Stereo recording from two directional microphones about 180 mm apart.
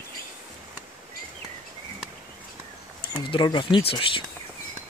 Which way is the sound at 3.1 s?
25° left (ahead or behind).